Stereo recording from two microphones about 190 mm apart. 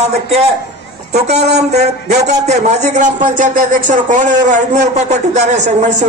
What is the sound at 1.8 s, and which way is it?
Speech, 35° right (ahead or behind).